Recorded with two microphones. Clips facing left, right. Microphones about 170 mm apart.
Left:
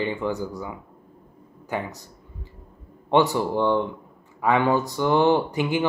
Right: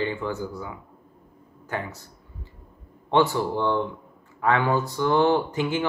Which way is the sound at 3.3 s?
15° left (ahead or behind).